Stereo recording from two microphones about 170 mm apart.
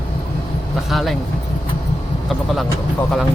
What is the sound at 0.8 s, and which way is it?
Speech, centre (ahead or behind).